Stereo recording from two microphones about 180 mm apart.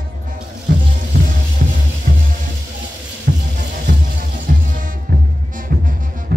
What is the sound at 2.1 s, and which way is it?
Music, 60° right (ahead or behind).